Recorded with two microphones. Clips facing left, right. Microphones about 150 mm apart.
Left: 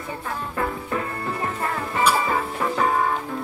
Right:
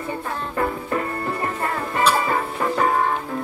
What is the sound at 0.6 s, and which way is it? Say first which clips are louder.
Music: right 3 dB; centre (ahead or behind).